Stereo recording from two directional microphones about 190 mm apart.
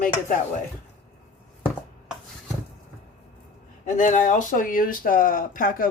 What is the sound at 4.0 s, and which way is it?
Speech, 40° left (ahead or behind).